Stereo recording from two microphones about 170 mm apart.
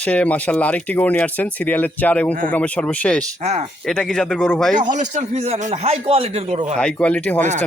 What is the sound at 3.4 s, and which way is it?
Speech, 40° right (ahead or behind).